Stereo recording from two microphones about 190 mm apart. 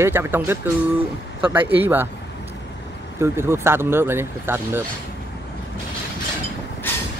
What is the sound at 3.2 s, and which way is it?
Speech, 15° right (ahead or behind).